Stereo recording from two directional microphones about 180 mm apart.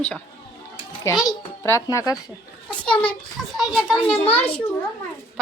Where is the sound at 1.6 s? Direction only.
15° left (ahead or behind).